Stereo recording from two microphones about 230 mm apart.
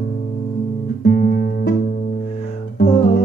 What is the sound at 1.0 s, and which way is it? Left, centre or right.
Guitar, left.